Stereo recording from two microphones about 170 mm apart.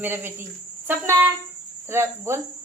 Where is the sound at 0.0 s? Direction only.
10° right (ahead or behind).